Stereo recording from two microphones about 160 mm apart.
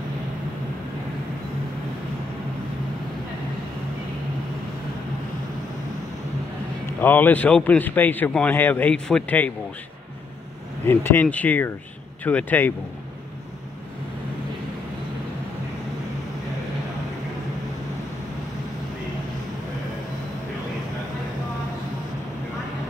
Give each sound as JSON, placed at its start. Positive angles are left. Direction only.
{"t": 7.0, "sound": "a man's voice", "side_deg": 10}
{"t": 10.9, "sound": "a man's voice", "side_deg": 15}